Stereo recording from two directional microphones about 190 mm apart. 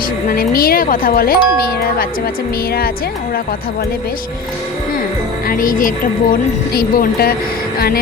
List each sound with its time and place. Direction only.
0.3 s speech: 50° left (ahead or behind)
5.5 s speech: 45° left (ahead or behind)